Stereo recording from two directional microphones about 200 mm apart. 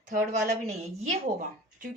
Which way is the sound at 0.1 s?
40° right (ahead or behind).